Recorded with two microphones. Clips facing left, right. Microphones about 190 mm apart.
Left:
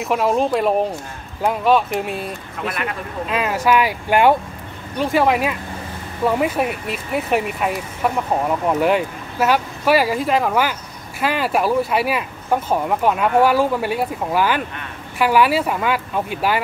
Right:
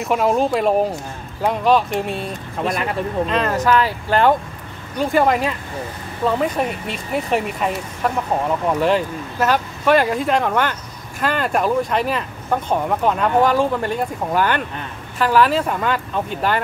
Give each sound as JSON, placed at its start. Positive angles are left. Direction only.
{"t": 0.0, "sound": "speech", "side_deg": 0}
{"t": 2.6, "sound": "speech", "side_deg": -35}
{"t": 3.3, "sound": "speech", "side_deg": 10}